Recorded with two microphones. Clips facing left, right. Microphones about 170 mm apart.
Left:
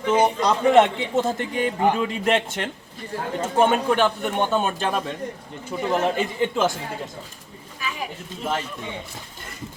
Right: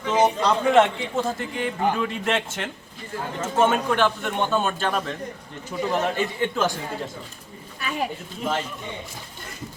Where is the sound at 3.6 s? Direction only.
15° left (ahead or behind).